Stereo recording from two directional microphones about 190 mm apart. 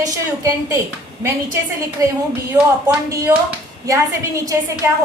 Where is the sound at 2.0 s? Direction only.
20° right (ahead or behind).